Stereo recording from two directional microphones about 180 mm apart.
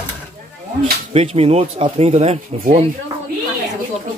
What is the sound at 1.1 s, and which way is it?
Speech, 35° right (ahead or behind).